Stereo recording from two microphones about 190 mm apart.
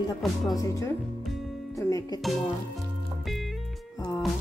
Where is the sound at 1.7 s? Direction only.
15° left (ahead or behind).